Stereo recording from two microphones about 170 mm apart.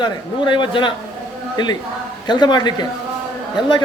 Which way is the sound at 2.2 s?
25° left (ahead or behind).